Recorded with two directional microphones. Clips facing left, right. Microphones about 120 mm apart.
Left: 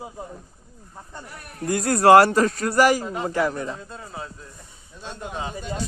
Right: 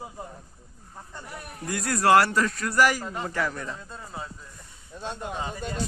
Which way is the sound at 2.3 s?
20° left (ahead or behind).